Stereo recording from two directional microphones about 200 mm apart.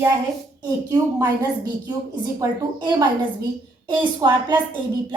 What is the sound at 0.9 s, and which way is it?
A woman's voice, 15° right (ahead or behind).